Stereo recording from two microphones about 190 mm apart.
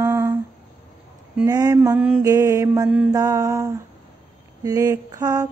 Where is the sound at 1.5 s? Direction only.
20° right (ahead or behind).